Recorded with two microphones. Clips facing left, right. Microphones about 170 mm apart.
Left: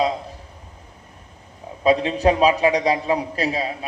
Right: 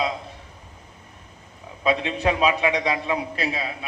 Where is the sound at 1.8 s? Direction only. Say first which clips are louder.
Left 5 dB; 40° left (ahead or behind).